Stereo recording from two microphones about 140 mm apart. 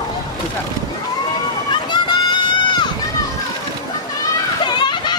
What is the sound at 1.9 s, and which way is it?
Run, 35° left (ahead or behind).